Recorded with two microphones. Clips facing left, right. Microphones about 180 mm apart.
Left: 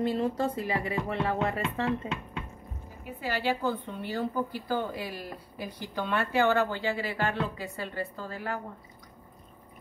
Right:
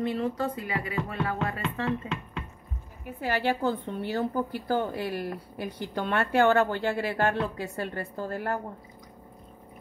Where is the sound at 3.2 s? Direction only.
50° right (ahead or behind).